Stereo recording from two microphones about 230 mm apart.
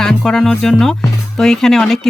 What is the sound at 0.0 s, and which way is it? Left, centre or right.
Speech, centre.